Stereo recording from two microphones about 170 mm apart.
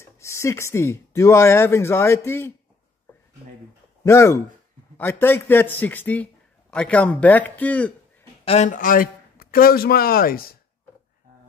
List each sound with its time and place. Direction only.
0.0 s speech: 15° left (ahead or behind)
4.0 s speech: 15° left (ahead or behind)
8.5 s speech: 45° left (ahead or behind); by 10.5 s 60° left (ahead or behind)